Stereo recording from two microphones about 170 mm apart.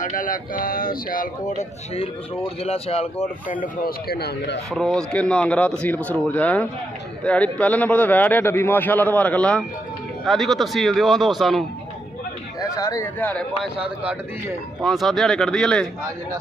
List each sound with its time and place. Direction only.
0.0 s speech: 50° left (ahead or behind)
2.6 s speech: 35° left (ahead or behind)
3.6 s speech: 65° left (ahead or behind)
4.7 s a man's voice: 5° left (ahead or behind)
12.5 s speech: 20° left (ahead or behind)
13.7 s a man's voice: 5° right (ahead or behind)